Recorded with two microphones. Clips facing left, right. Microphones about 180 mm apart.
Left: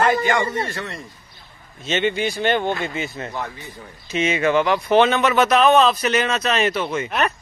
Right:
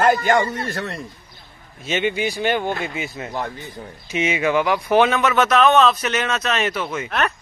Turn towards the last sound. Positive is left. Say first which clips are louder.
# left 1 dB
turn(degrees=0)  # may be behind; listen again after turning